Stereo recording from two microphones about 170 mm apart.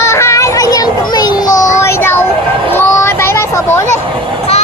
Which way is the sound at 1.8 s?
15° left (ahead or behind).